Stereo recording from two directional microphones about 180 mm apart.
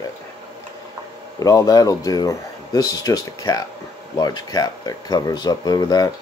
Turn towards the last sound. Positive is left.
turn(degrees=20)  # may be behind; listen again after turning